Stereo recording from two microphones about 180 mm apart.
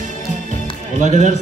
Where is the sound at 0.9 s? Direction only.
45° right (ahead or behind).